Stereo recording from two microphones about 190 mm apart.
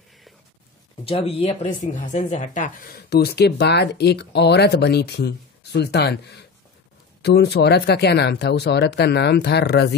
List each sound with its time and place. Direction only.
1.0 s speech: 30° left (ahead or behind); by 9.9 s 60° left (ahead or behind)